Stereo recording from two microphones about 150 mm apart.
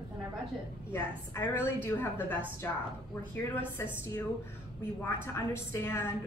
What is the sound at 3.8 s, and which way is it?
Speech, 15° left (ahead or behind).